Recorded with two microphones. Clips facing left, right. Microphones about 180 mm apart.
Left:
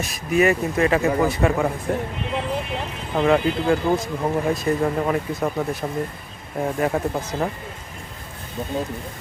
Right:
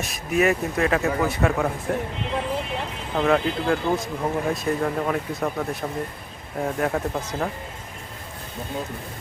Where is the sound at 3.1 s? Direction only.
Centre (ahead or behind).